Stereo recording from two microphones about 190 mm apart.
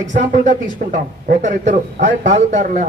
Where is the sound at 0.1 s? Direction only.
40° right (ahead or behind).